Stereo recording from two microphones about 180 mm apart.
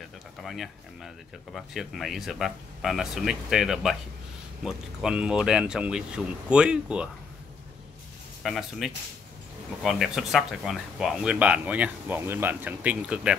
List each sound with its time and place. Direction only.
0.4 s speech: centre (ahead or behind)
8.4 s speech: centre (ahead or behind)